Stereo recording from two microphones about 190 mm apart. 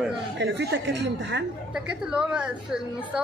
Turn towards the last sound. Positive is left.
turn(degrees=-5)  # may be behind; listen again after turning